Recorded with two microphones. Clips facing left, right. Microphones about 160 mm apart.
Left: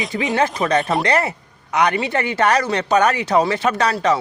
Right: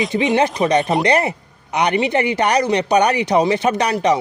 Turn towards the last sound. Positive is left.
turn(degrees=-20)  # may be behind; listen again after turning